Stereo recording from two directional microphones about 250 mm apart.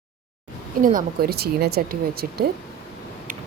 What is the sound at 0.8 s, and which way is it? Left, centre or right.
Speech, right.